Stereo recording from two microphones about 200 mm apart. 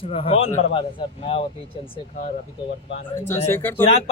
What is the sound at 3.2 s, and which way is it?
Speech, 10° left (ahead or behind).